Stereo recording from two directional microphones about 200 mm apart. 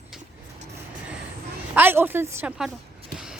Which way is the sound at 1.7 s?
10° right (ahead or behind).